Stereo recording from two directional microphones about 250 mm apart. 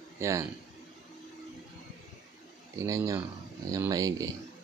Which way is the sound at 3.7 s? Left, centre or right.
Centre.